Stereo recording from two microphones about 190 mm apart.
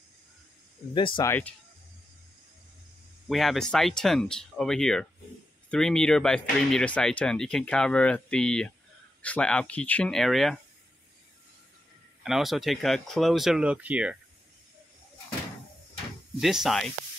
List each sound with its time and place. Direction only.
0.9 s speech: 25° left (ahead or behind)
1.2 s speech: 10° left (ahead or behind)
3.3 s speech: centre (ahead or behind)
12.2 s speech: centre (ahead or behind)
16.3 s speech: centre (ahead or behind)